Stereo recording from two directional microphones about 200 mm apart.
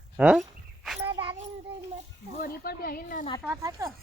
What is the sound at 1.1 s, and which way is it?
Music, 25° right (ahead or behind).